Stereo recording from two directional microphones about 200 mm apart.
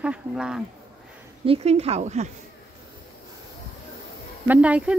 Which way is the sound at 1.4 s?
30° right (ahead or behind).